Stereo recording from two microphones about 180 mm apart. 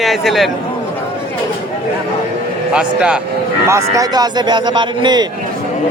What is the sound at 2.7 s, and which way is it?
Speech, 5° right (ahead or behind).